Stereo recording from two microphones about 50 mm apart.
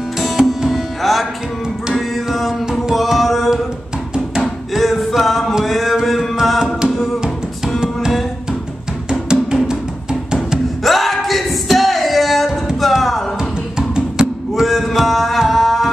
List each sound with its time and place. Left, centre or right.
0.6 s music: centre
9.3 s music: centre
10.8 s singing: centre
12.8 s music: centre
13.7 s music: centre
14.5 s music: centre